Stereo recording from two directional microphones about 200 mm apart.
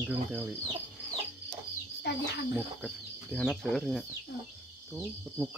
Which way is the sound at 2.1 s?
60° left (ahead or behind).